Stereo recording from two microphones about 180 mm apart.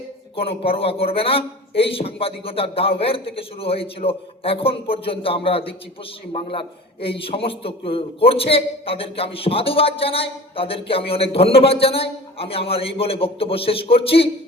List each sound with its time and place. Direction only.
0.3 s a man's voice: 30° left (ahead or behind)